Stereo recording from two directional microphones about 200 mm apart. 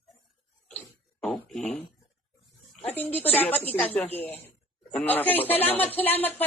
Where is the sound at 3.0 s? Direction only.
10° left (ahead or behind).